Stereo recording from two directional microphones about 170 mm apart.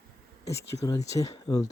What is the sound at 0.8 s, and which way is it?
Speech, 20° left (ahead or behind).